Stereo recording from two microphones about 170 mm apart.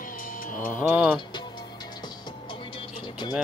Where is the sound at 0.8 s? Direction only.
Centre (ahead or behind).